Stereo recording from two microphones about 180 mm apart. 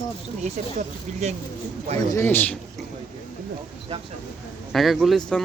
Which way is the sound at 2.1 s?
15° left (ahead or behind).